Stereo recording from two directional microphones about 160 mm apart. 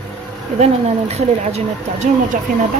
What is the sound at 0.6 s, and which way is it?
Speech, 45° right (ahead or behind).